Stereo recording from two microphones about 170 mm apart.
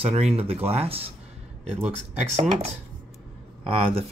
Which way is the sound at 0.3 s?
35° right (ahead or behind).